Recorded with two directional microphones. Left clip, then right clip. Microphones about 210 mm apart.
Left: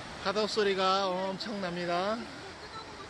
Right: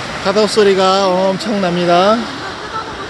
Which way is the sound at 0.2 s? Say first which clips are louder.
Right 17 dB; 5° right (ahead or behind).